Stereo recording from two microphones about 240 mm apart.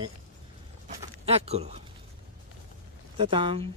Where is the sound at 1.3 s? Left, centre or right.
Right.